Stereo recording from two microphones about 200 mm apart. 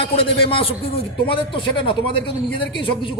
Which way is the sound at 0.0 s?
25° left (ahead or behind).